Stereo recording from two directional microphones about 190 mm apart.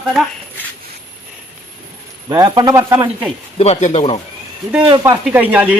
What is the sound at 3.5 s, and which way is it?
Speech, 35° left (ahead or behind).